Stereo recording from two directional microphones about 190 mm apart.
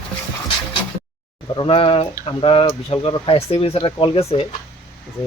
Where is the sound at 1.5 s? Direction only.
25° left (ahead or behind).